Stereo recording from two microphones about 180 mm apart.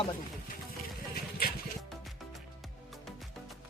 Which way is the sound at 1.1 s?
60° left (ahead or behind).